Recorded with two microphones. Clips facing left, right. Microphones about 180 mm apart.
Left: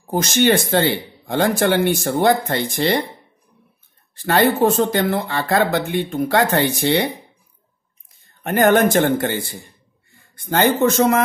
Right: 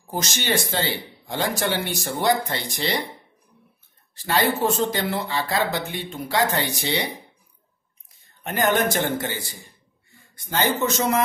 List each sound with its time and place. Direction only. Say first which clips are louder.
0.1 s speech: left 9 dB; 55° left (ahead or behind)
4.1 s speech: left 6 dB; 55° left (ahead or behind)
8.5 s speech: left 7 dB; 55° left (ahead or behind)